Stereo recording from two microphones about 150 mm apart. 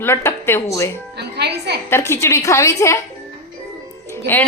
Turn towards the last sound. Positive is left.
turn(degrees=15)  # may be behind; listen again after turning